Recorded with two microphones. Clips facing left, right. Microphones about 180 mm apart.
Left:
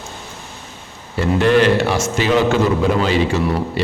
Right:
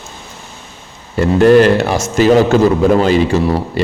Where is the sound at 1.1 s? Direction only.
40° right (ahead or behind).